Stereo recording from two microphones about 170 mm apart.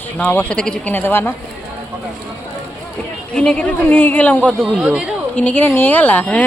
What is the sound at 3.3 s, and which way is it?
A woman's voice, 5° left (ahead or behind).